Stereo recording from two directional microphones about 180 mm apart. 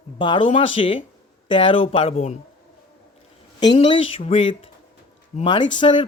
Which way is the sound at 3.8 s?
30° left (ahead or behind).